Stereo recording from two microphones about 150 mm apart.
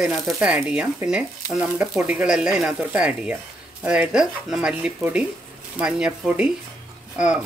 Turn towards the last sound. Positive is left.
turn(degrees=-10)  # may be behind; listen again after turning